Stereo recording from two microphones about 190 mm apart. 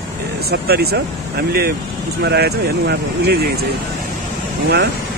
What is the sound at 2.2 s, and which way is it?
Speech, 60° right (ahead or behind).